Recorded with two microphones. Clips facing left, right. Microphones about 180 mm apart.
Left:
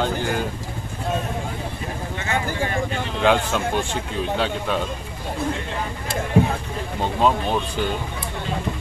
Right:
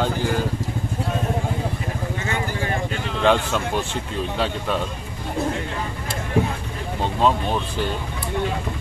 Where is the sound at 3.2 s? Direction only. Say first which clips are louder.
Even; centre (ahead or behind).